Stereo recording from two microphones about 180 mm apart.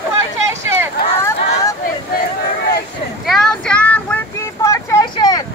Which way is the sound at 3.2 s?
Centre (ahead or behind).